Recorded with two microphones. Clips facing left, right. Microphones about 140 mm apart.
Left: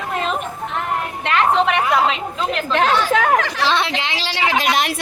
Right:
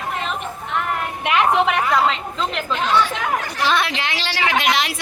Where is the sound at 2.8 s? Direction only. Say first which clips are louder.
Left 3 dB; 55° left (ahead or behind); by 3.6 s 85° left.